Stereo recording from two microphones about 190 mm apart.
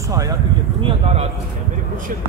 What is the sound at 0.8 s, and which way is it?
Speech, 30° right (ahead or behind).